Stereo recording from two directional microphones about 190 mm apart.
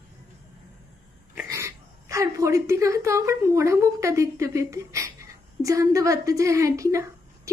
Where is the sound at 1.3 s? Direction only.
10° right (ahead or behind).